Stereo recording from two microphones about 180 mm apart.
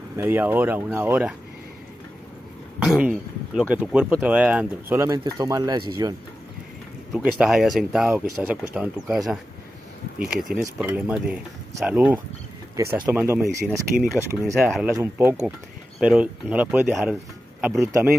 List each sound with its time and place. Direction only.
0.2 s speech: 10° right (ahead or behind)
2.8 s speech: 5° right (ahead or behind)
7.1 s speech: centre (ahead or behind)